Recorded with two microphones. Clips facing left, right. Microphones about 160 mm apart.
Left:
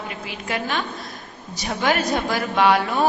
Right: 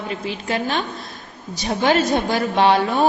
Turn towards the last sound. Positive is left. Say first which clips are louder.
# right 2 dB
turn(degrees=-25)  # may be behind; listen again after turning